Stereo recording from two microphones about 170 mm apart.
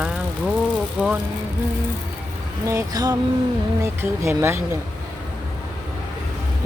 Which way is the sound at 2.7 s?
20° right (ahead or behind).